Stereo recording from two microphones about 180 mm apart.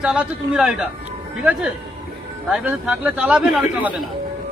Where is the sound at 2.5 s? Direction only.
5° right (ahead or behind).